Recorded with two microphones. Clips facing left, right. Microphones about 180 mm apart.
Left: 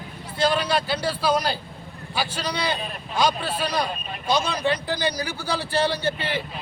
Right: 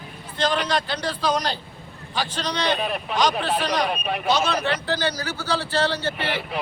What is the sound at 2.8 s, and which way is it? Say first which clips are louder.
Speech: right 7 dB; 75° right (ahead or behind).